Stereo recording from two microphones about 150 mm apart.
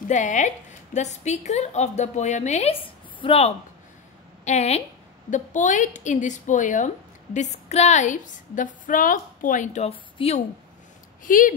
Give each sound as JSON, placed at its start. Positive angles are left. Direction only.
{"t": 0.1, "sound": "a woman's voice", "side_deg": 55}
{"t": 11.2, "sound": "a woman's voice", "side_deg": 65}